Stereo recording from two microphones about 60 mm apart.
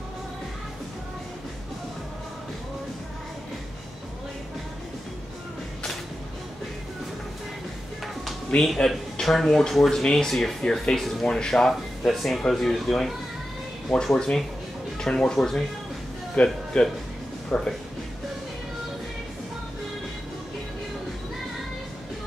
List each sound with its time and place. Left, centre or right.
8.5 s speech: centre